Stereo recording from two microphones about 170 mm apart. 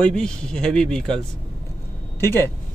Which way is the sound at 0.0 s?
5° left (ahead or behind).